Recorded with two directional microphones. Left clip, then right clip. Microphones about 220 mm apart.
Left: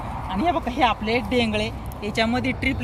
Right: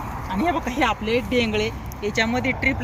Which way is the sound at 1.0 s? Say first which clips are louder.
Right 1 dB; 40° left (ahead or behind).